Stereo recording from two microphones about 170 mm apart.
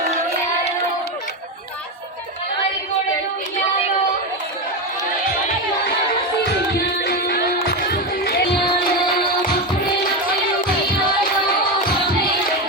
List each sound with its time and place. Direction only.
7.0 s music: 65° left (ahead or behind)